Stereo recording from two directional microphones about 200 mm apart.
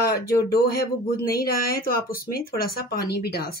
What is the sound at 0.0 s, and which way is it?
Speech, 50° left (ahead or behind).